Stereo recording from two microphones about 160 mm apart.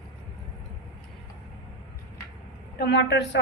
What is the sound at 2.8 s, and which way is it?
Speech, 90° left.